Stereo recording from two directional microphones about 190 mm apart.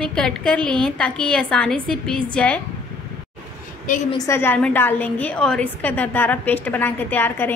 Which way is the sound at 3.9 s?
45° left (ahead or behind).